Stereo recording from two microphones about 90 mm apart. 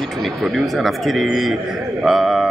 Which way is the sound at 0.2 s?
Centre (ahead or behind).